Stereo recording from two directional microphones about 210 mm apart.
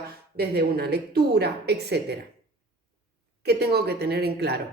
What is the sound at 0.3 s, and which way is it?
A woman's voice, 50° right (ahead or behind).